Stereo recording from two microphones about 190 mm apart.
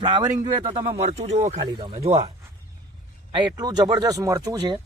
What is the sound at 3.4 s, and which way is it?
Speech, 20° right (ahead or behind).